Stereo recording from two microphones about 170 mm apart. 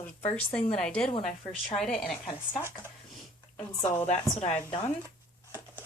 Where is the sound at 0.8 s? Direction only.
5° left (ahead or behind).